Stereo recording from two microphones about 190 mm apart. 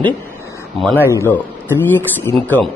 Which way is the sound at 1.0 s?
10° left (ahead or behind).